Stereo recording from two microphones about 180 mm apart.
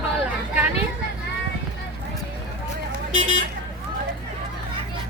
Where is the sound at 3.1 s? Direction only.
90° right.